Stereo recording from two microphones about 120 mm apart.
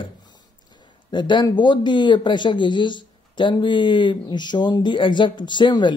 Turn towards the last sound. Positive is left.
turn(degrees=40)  # may be behind; listen again after turning